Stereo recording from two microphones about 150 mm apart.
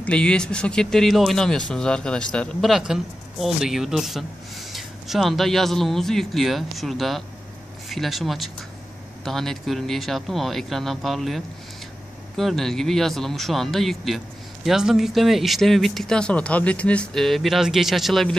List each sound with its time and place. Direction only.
0.0 s speech: 5° left (ahead or behind)